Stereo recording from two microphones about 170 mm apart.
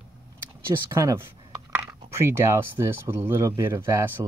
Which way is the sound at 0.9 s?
20° right (ahead or behind).